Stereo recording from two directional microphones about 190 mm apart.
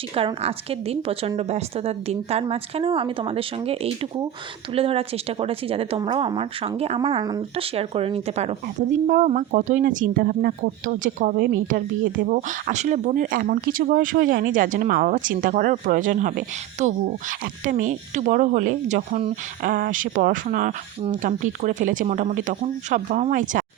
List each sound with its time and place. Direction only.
0.2 s speech: 30° right (ahead or behind)